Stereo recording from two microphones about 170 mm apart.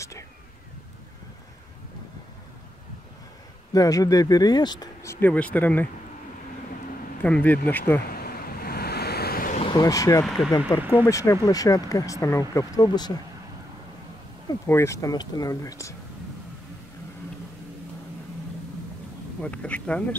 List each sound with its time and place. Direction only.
3.7 s speech: 20° left (ahead or behind)
7.2 s speech: 10° left (ahead or behind)
8.1 s waves: 60° left (ahead or behind)
9.6 s speech: 25° left (ahead or behind)
10.2 s speech: centre (ahead or behind)
10.8 s speech: 10° right (ahead or behind)
11.1 s speech: 20° left (ahead or behind)
14.7 s speech: 15° left (ahead or behind)
19.4 s speech: 5° left (ahead or behind)